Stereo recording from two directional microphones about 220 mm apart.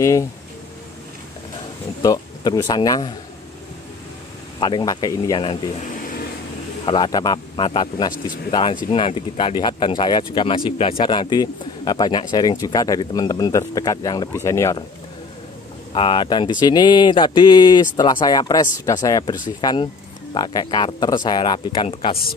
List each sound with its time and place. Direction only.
0.0 s speech: 15° left (ahead or behind)
2.0 s speech: 15° left (ahead or behind)
4.6 s speech: 20° left (ahead or behind)
6.9 s speech: 20° left (ahead or behind)
15.9 s speech: 25° left (ahead or behind)